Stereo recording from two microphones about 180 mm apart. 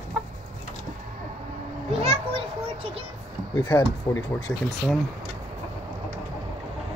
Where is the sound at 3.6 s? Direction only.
15° left (ahead or behind).